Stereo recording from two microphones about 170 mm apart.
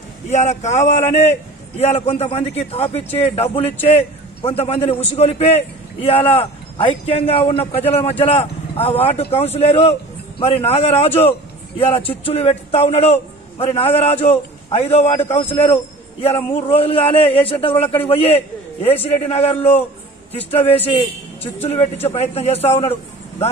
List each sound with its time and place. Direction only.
0.3 s a man's voice: 45° left (ahead or behind)
16.5 s speech: 35° left (ahead or behind)